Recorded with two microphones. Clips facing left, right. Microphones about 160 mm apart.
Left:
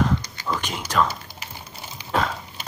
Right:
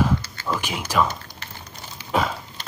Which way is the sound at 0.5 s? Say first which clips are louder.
Right 1 dB; 5° right (ahead or behind).